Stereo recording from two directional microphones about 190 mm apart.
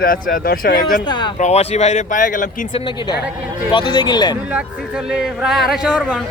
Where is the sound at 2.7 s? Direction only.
25° left (ahead or behind).